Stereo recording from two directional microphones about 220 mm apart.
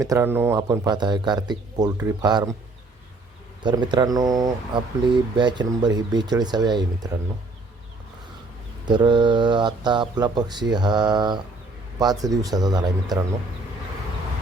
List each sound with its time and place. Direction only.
0.0 s speech: 10° right (ahead or behind)
3.6 s speech: 20° right (ahead or behind)
8.9 s speech: 20° right (ahead or behind)